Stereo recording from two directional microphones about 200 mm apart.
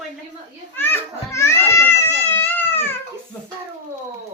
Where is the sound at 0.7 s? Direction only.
10° left (ahead or behind).